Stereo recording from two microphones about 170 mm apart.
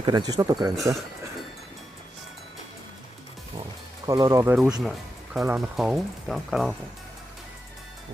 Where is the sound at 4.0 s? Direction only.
20° right (ahead or behind).